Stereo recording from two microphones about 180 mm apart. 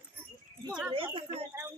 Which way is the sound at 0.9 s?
30° right (ahead or behind).